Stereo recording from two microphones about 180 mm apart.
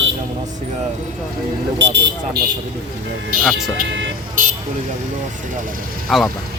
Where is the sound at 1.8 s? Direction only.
80° right.